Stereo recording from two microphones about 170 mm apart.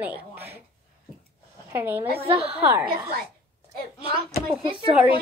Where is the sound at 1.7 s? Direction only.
10° right (ahead or behind).